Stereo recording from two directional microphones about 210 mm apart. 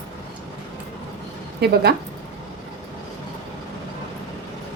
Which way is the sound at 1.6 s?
50° right (ahead or behind).